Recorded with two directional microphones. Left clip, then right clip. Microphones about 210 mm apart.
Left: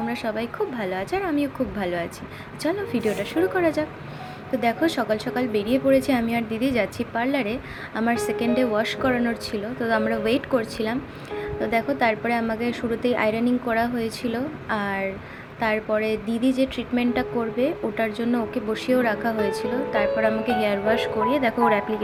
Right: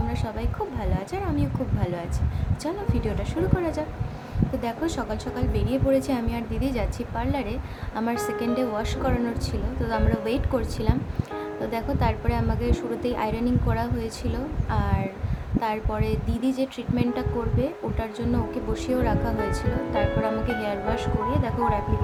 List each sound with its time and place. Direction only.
0.1 s a woman's voice: 15° left (ahead or behind)